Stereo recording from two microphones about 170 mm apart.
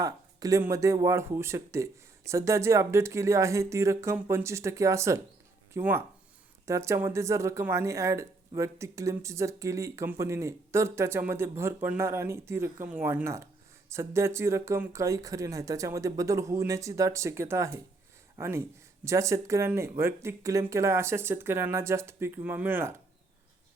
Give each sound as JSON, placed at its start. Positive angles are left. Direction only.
{"t": 0.0, "sound": "speech", "side_deg": -20}